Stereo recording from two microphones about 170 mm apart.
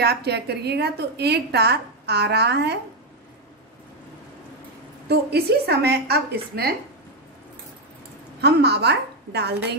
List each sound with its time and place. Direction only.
0.0 s a woman's voice: 75° right (ahead or behind)
5.0 s a woman's voice: 70° right (ahead or behind)
8.4 s a woman's voice: 75° right (ahead or behind)